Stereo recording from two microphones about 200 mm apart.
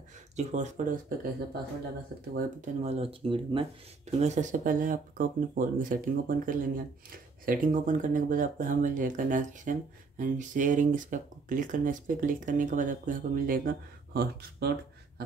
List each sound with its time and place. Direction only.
0.4 s speech: 35° right (ahead or behind)
2.3 s speech: 35° right (ahead or behind); by 14.7 s 50° right (ahead or behind)